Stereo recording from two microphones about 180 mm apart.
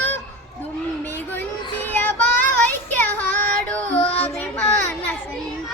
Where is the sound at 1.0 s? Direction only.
10° left (ahead or behind).